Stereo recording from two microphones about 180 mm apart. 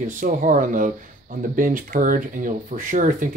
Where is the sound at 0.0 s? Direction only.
45° right (ahead or behind).